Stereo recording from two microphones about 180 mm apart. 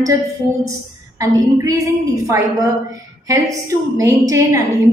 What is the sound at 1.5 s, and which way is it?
Speech, 20° right (ahead or behind).